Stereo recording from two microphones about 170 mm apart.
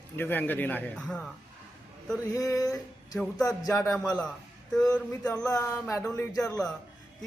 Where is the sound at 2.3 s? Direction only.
20° left (ahead or behind).